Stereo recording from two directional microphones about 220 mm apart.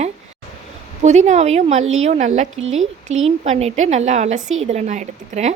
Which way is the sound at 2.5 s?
65° right (ahead or behind).